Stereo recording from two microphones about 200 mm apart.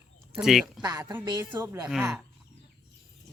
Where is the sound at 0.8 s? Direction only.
20° right (ahead or behind).